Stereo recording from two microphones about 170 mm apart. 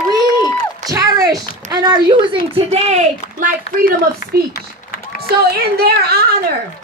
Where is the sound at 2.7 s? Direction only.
45° right (ahead or behind).